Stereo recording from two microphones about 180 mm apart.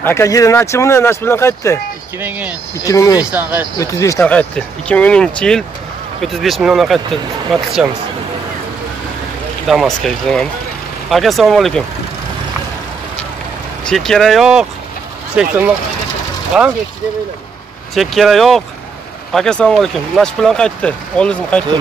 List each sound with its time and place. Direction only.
0.0 s speech: 15° left (ahead or behind)
2.1 s speech: 10° right (ahead or behind)
2.8 s speech: 20° left (ahead or behind)
3.2 s speech: 5° right (ahead or behind)
3.7 s speech: 15° left (ahead or behind); by 7.8 s centre (ahead or behind)
9.7 s speech: centre (ahead or behind)
13.8 s speech: 5° left (ahead or behind)
17.9 s speech: centre (ahead or behind)